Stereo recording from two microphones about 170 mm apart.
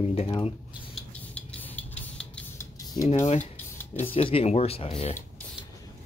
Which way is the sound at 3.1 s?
40° left (ahead or behind).